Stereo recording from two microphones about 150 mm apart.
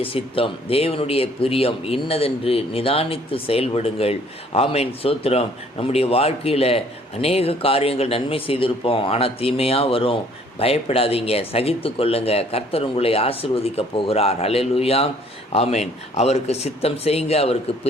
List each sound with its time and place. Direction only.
0.0 s a man's voice: 35° left (ahead or behind)